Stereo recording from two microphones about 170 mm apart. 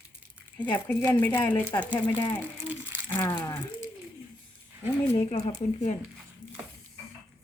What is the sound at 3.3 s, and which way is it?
Speech, 25° left (ahead or behind).